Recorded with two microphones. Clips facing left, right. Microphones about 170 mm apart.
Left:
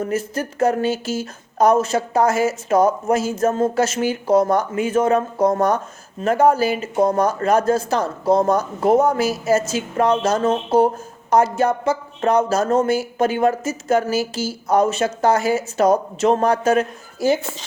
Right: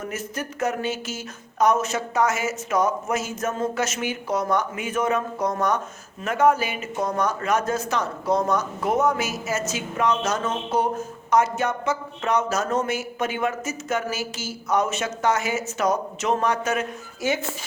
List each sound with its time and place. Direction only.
0.0 s speech: 30° left (ahead or behind)